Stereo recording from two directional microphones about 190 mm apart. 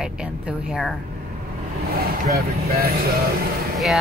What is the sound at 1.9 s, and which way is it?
Speech, 55° right (ahead or behind).